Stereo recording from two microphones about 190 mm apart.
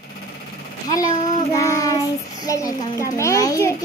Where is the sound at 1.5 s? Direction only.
15° left (ahead or behind).